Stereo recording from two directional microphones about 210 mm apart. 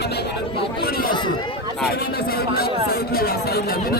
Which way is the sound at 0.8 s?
45° left (ahead or behind).